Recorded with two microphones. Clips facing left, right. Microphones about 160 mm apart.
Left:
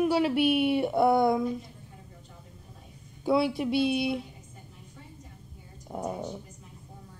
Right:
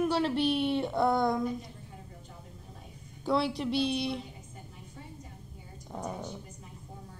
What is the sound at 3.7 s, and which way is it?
Speech, 50° left (ahead or behind).